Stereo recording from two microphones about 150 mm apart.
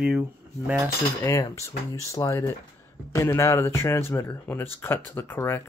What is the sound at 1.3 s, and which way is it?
Speech, 20° left (ahead or behind).